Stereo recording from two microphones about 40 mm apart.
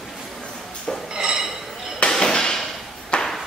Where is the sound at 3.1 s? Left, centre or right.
Left.